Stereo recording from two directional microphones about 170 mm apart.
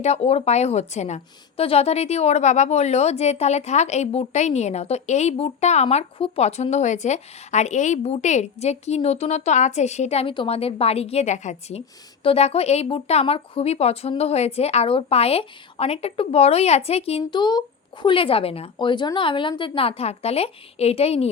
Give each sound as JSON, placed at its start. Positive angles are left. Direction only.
{"t": 0.0, "sound": "a woman's voice", "side_deg": 40}